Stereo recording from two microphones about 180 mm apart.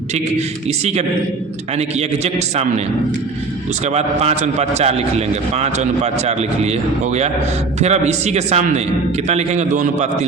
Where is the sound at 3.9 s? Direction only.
35° right (ahead or behind).